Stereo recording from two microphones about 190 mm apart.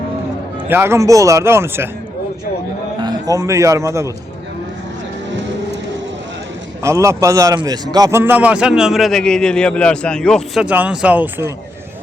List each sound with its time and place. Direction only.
0.7 s speech: 10° right (ahead or behind)
3.0 s speech: 20° right (ahead or behind)
6.8 s a man's voice: 15° right (ahead or behind)